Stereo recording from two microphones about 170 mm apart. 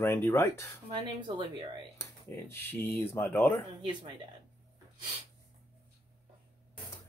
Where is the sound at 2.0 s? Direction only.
15° left (ahead or behind).